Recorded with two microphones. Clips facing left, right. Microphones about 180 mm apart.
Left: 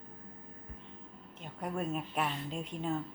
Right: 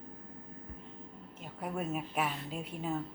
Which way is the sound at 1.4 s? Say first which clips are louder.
Left 1 dB; 5° right (ahead or behind).